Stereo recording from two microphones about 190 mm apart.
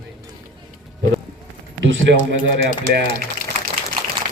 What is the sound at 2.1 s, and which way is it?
Speech, 70° right (ahead or behind).